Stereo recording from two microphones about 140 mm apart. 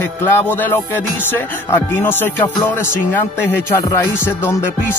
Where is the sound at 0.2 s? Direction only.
20° left (ahead or behind).